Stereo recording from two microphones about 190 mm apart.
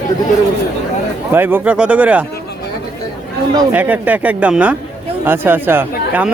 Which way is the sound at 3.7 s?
10° right (ahead or behind).